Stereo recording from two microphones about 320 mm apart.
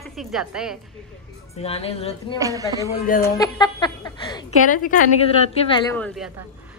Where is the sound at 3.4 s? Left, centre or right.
Centre.